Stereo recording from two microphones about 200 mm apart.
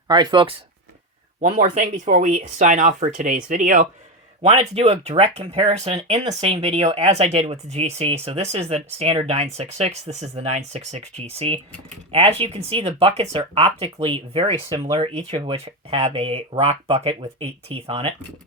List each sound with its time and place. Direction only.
0.1 s speech: 20° right (ahead or behind)
1.4 s speech: 40° right (ahead or behind)
4.4 s speech: 30° right (ahead or behind)